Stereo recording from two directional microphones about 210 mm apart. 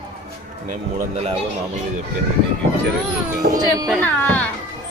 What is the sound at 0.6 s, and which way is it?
Speech, 35° right (ahead or behind).